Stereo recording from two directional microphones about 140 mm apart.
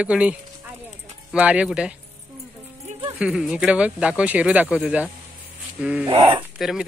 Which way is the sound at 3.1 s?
5° right (ahead or behind).